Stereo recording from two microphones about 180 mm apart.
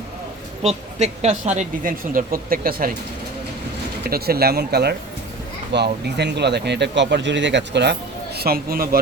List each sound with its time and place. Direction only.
0.6 s speech: 40° right (ahead or behind); by 2.9 s 55° right (ahead or behind)
4.0 s speech: 60° right (ahead or behind)
8.4 s speech: 55° right (ahead or behind)